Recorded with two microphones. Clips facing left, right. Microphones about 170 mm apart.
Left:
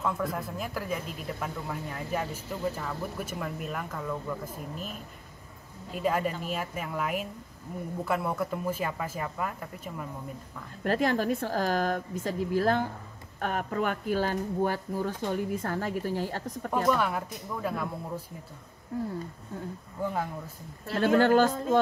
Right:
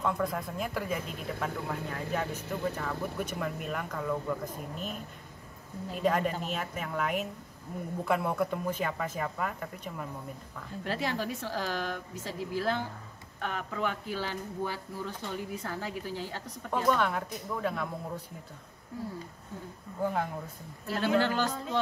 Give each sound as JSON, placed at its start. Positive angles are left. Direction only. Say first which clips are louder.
{"t": 0.0, "sound": "speech", "louder": "even", "side_deg": 5}
{"t": 6.0, "sound": "speech", "louder": "even", "side_deg": 5}
{"t": 10.8, "sound": "speech", "louder": "left 6 dB", "side_deg": 50}
{"t": 17.0, "sound": "speech", "louder": "even", "side_deg": 5}
{"t": 20.9, "sound": "speech", "louder": "left 6 dB", "side_deg": 50}